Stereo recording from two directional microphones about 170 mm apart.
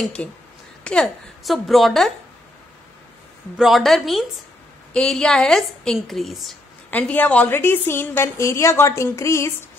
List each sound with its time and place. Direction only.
0.2 s a woman's voice: 5° left (ahead or behind)
3.5 s a woman's voice: centre (ahead or behind); by 9.7 s 15° left (ahead or behind)